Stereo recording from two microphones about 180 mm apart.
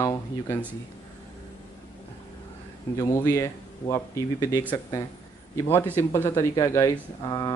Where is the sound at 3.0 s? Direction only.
15° left (ahead or behind).